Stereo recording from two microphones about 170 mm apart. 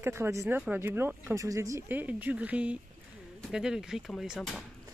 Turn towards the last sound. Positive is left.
turn(degrees=0)  # may be behind; listen again after turning